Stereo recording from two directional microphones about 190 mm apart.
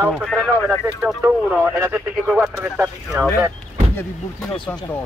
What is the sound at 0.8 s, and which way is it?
Speech, 10° right (ahead or behind).